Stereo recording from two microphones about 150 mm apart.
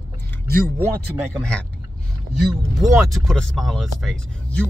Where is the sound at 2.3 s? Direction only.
Centre (ahead or behind).